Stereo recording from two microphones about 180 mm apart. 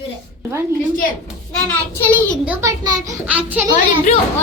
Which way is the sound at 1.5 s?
5° left (ahead or behind).